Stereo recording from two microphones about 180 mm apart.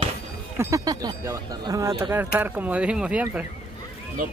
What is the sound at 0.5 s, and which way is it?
Speech, 20° right (ahead or behind).